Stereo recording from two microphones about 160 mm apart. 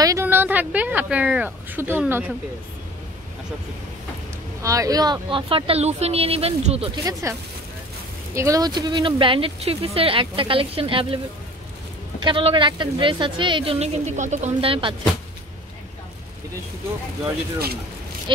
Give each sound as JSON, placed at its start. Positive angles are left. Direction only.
{"t": 0.0, "sound": "a woman's voice", "side_deg": -15}
{"t": 4.6, "sound": "speech", "side_deg": -20}
{"t": 7.1, "sound": "speech", "side_deg": -20}
{"t": 8.4, "sound": "speech", "side_deg": -20}
{"t": 12.2, "sound": "speech", "side_deg": -30}